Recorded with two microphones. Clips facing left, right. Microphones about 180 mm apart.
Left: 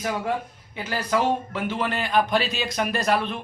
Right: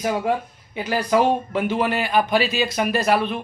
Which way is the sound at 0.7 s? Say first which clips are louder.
Right 5 dB; 15° right (ahead or behind).